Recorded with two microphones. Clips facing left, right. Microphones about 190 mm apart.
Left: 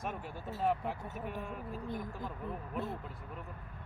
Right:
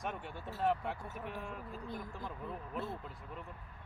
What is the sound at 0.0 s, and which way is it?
Speech, centre (ahead or behind).